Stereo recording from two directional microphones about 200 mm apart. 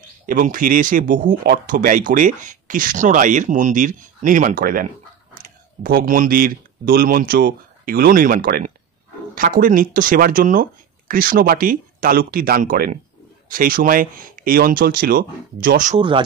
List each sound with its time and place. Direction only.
0.3 s speech: 45° right (ahead or behind)
5.9 s speech: 45° right (ahead or behind)